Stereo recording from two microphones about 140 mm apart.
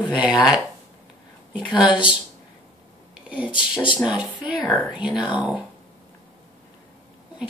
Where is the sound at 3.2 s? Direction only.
10° right (ahead or behind).